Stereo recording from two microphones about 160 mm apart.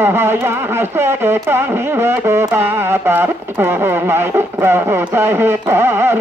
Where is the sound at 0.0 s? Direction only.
15° right (ahead or behind).